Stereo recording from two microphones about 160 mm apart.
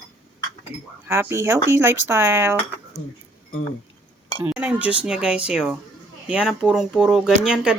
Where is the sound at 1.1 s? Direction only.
15° right (ahead or behind).